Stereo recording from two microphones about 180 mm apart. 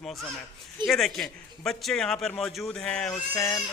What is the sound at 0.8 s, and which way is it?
A man's voice, centre (ahead or behind).